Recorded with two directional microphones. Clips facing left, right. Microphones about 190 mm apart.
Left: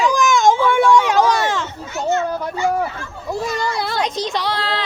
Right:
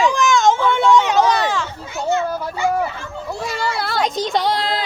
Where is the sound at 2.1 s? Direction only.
15° right (ahead or behind).